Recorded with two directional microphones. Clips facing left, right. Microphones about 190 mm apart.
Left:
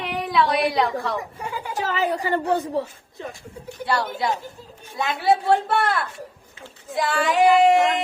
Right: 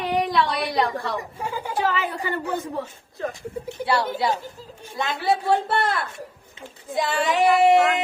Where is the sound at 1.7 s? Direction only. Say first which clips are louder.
Left 2 dB; 40° left (ahead or behind).